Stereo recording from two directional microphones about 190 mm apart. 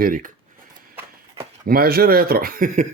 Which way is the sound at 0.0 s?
45° right (ahead or behind).